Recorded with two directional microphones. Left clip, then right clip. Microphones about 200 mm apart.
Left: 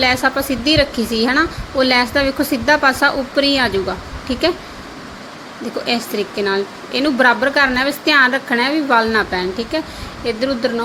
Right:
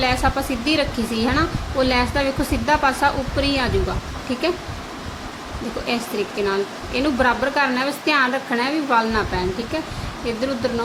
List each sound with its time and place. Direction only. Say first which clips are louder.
0.0 s a woman's voice: left 4 dB; 15° left (ahead or behind)
5.8 s a woman's voice: left 4 dB; 20° left (ahead or behind)